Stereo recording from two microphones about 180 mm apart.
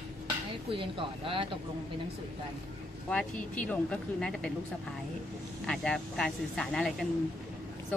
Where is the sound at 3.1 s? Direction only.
5° left (ahead or behind).